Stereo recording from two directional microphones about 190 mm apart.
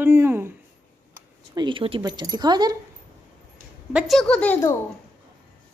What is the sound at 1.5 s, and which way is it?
Speech, 25° right (ahead or behind).